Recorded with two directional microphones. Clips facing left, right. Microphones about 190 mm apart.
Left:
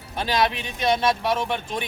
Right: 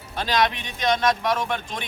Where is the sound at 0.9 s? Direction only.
10° left (ahead or behind).